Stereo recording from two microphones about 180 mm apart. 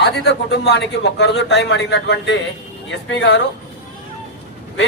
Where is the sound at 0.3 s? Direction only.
70° left (ahead or behind); by 3.4 s 90° left.